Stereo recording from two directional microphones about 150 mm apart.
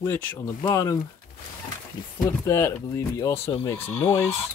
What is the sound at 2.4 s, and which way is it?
Speech, 20° left (ahead or behind).